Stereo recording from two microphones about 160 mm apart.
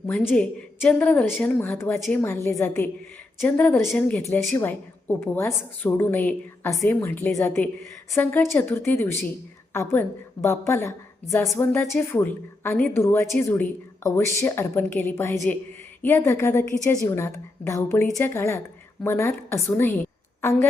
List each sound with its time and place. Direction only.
0.1 s a woman's voice: 10° left (ahead or behind)